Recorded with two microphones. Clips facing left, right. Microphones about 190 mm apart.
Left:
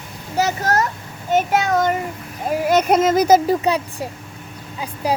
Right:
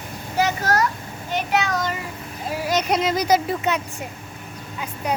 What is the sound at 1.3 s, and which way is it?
Speech, 45° left (ahead or behind).